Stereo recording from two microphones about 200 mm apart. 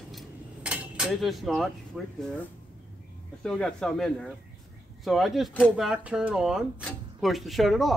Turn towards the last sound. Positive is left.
turn(degrees=0)  # may be behind; listen again after turning